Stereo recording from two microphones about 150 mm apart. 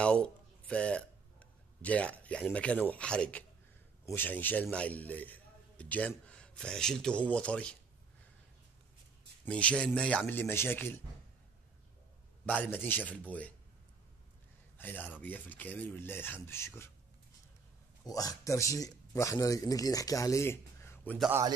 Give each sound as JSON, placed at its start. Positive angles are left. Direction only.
{"t": 0.0, "sound": "a man's voice", "side_deg": 5}
{"t": 9.4, "sound": "speech", "side_deg": 10}
{"t": 12.4, "sound": "speech", "side_deg": 10}
{"t": 14.8, "sound": "speech", "side_deg": 10}
{"t": 18.0, "sound": "speech", "side_deg": 25}